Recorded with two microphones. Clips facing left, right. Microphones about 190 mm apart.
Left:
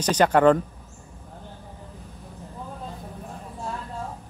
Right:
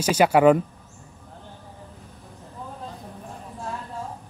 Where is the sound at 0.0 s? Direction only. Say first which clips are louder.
Right 1 dB; 10° right (ahead or behind).